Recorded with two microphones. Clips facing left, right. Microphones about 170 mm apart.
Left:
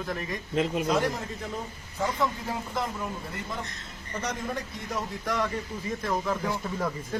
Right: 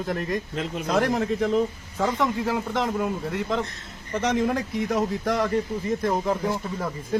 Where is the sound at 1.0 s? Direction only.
90° right; by 5.1 s 65° right (ahead or behind).